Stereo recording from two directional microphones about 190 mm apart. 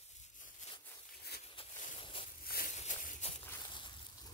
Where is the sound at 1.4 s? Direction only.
30° left (ahead or behind).